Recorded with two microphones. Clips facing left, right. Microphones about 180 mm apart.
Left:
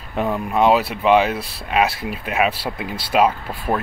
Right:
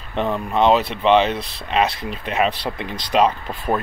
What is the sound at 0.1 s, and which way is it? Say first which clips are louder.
Speech: even; 10° left (ahead or behind).